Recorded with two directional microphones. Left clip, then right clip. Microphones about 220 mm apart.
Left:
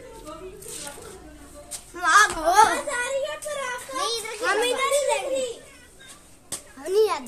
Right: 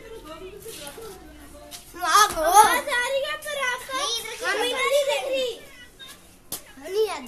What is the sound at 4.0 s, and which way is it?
Children playing, 40° left (ahead or behind).